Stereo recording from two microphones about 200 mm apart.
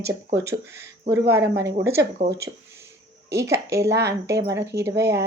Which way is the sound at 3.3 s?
15° right (ahead or behind).